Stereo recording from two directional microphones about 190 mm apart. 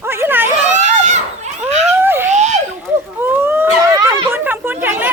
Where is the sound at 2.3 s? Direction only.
40° right (ahead or behind).